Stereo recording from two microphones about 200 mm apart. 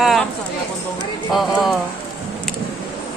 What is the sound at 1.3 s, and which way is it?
Speech, centre (ahead or behind).